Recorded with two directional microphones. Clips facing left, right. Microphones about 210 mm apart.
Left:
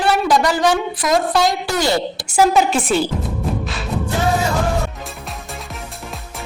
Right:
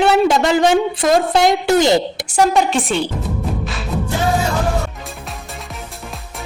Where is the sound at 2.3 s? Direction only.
Centre (ahead or behind).